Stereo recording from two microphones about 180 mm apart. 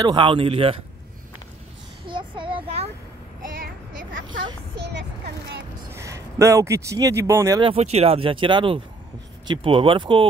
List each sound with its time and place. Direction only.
0.0 s speech: 25° right (ahead or behind)
2.0 s child singing: 25° right (ahead or behind)
3.5 s a sound: 55° right (ahead or behind)
4.7 s vehicle: 70° right (ahead or behind)
5.9 s speech: 15° right (ahead or behind)
7.7 s speech: 35° right (ahead or behind)